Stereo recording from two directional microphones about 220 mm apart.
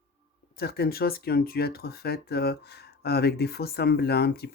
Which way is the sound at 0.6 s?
45° left (ahead or behind).